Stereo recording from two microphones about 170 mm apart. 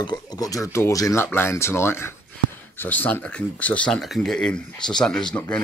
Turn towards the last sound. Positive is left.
turn(degrees=5)  # may be behind; listen again after turning